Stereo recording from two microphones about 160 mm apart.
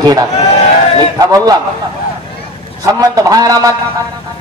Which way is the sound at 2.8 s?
20° right (ahead or behind).